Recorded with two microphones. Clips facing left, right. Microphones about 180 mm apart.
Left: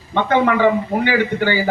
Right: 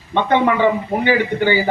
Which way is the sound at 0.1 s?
20° right (ahead or behind).